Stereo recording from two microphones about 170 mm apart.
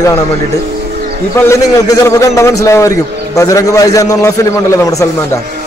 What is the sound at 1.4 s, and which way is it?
A man's voice, 15° left (ahead or behind).